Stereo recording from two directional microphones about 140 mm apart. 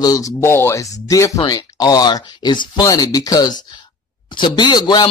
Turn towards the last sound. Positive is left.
turn(degrees=30)  # may be behind; listen again after turning